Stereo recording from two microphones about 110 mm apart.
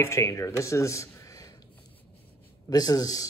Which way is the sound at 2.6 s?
35° left (ahead or behind).